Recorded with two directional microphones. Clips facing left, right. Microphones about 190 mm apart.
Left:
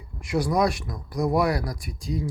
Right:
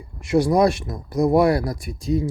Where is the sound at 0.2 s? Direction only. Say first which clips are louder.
Right 6 dB; 25° right (ahead or behind).